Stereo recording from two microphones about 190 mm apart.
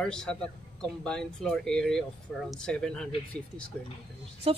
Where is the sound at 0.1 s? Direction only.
5° left (ahead or behind).